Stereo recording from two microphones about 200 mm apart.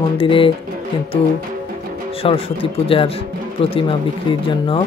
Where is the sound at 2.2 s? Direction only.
25° left (ahead or behind).